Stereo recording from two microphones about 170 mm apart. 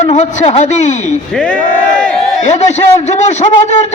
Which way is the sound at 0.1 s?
45° left (ahead or behind).